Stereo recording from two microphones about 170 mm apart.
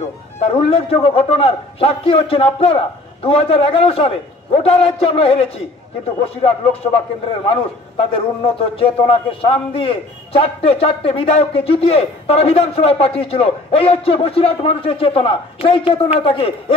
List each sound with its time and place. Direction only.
0.4 s a man's voice: 35° left (ahead or behind)
8.0 s a man's voice: 35° left (ahead or behind)